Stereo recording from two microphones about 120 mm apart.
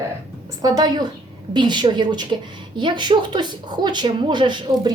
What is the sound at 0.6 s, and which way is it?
A woman's voice, 35° right (ahead or behind).